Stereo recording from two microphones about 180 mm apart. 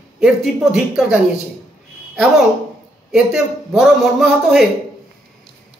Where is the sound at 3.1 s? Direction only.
Centre (ahead or behind).